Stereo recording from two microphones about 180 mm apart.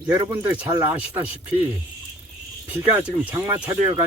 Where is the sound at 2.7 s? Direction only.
10° right (ahead or behind).